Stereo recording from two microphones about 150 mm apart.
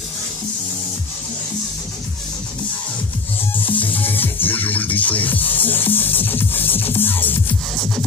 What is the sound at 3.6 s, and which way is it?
Music, 10° left (ahead or behind).